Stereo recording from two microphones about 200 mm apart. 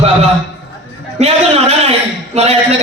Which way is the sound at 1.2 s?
30° right (ahead or behind).